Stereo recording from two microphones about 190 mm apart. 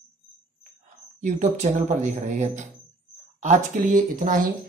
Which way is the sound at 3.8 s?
45° right (ahead or behind).